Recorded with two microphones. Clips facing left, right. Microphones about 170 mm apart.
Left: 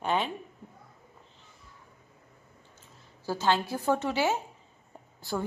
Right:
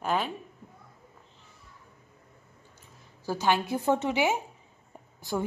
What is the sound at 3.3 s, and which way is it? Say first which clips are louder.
A woman's voice: right 1 dB; 15° right (ahead or behind).